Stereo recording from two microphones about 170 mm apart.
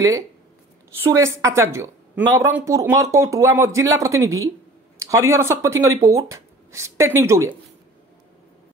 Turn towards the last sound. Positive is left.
turn(degrees=-15)  # may be behind; listen again after turning